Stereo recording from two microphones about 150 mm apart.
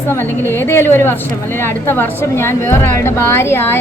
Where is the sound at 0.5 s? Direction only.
15° left (ahead or behind).